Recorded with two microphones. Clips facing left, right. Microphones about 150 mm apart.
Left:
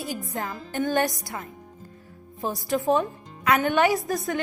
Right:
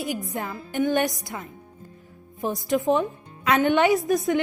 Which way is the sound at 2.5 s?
20° right (ahead or behind).